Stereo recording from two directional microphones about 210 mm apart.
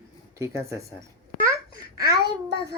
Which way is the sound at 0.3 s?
15° right (ahead or behind).